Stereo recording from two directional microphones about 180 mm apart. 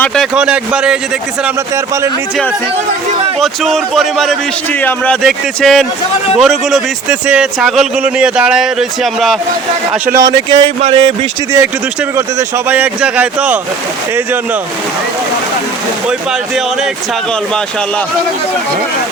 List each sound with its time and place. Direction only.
0.0 s a man's voice: centre (ahead or behind)
3.4 s a man's voice: centre (ahead or behind)
10.2 s speech: 25° right (ahead or behind)
12.1 s speech: 15° right (ahead or behind)